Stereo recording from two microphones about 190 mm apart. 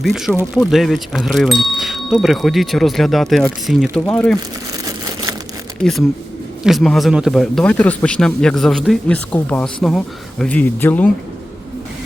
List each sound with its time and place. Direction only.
0.0 s speech: centre (ahead or behind)
4.9 s crumpling: 20° right (ahead or behind)
6.6 s speech: centre (ahead or behind)